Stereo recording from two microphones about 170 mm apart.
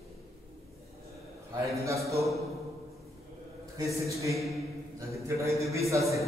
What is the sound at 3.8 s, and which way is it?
Speech, 20° right (ahead or behind).